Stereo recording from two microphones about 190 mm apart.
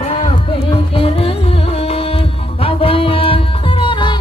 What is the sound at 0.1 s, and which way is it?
Music, 30° left (ahead or behind).